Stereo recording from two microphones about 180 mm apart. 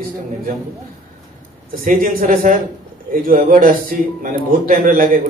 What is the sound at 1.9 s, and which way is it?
A man's voice, 50° right (ahead or behind).